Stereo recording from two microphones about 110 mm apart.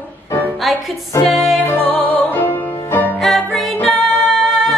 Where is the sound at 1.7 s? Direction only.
15° left (ahead or behind).